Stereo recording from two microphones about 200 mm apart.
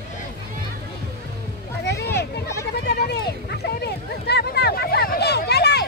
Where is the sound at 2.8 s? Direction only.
55° left (ahead or behind).